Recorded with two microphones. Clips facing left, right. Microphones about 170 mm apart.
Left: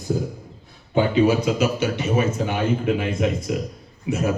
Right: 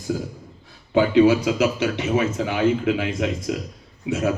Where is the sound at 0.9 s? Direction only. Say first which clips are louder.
Right 2 dB; 90° right.